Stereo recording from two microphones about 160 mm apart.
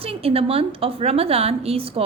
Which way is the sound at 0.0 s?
35° right (ahead or behind).